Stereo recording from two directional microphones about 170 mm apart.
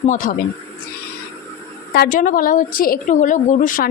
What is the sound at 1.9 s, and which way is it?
A woman's voice, 60° left (ahead or behind).